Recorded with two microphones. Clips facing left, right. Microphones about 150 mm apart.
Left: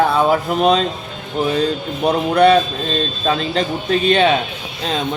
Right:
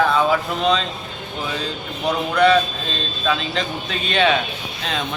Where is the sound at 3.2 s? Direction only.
40° left (ahead or behind).